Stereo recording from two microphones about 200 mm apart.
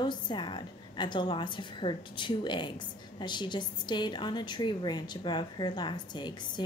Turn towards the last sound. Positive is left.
turn(degrees=20)  # may be behind; listen again after turning